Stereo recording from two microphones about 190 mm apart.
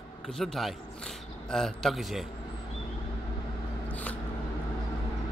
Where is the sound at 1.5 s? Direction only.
Centre (ahead or behind).